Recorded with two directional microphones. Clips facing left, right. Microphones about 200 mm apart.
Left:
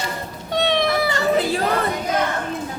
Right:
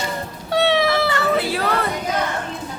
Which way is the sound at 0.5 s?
5° right (ahead or behind).